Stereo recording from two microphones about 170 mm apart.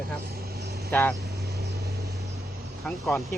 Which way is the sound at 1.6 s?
20° right (ahead or behind).